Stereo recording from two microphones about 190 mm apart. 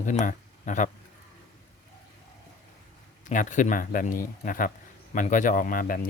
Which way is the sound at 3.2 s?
40° left (ahead or behind).